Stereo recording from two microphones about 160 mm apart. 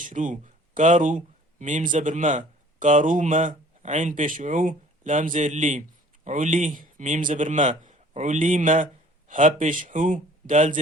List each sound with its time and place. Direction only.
0.0 s a man's voice: 55° right (ahead or behind)